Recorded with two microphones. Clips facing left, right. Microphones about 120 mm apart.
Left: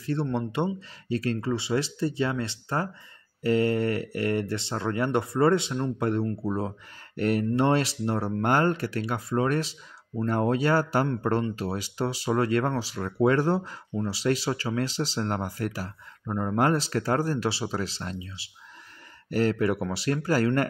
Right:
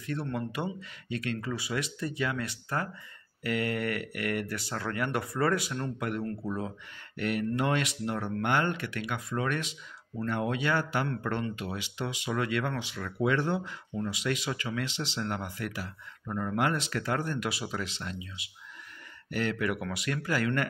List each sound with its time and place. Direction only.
0.0 s speech: 30° left (ahead or behind)